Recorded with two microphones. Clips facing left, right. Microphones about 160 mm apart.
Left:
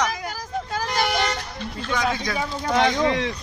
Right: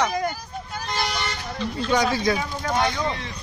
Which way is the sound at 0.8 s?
75° left (ahead or behind).